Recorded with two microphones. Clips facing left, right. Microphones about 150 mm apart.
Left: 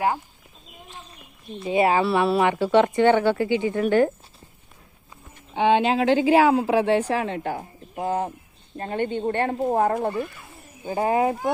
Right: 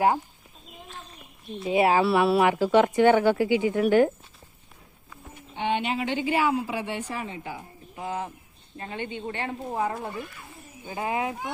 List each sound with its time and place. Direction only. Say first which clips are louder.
1.5 s speech: left 1 dB; centre (ahead or behind)
5.5 s a woman's voice: left 8 dB; 90° left; by 10.2 s 50° left (ahead or behind)
10.8 s speech: left 7 dB; 35° left (ahead or behind)